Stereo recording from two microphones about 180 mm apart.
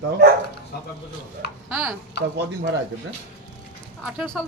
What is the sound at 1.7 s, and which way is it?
Speech, 5° right (ahead or behind).